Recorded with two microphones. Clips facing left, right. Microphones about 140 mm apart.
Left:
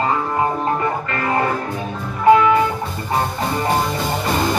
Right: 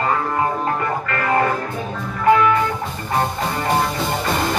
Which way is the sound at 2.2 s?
20° left (ahead or behind).